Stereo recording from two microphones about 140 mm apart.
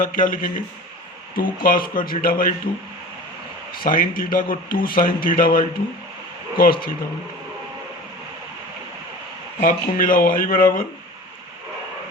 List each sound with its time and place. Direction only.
0.0 s speech: 75° left (ahead or behind)
1.4 s speech: 90° left
3.8 s speech: 80° left
4.2 s speech: 90° left
9.6 s speech: 75° left (ahead or behind)